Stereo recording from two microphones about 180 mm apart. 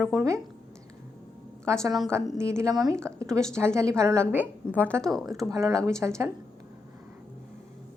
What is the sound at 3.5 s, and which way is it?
A woman's voice, 15° right (ahead or behind).